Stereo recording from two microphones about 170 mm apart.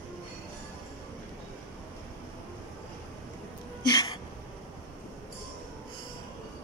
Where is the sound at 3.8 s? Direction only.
25° left (ahead or behind).